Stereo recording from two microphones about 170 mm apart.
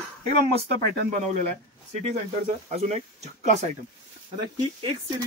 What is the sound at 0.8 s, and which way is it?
Speech, 65° right (ahead or behind).